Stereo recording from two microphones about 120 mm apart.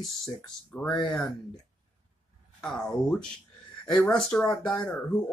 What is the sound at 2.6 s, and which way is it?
Speech, 5° left (ahead or behind).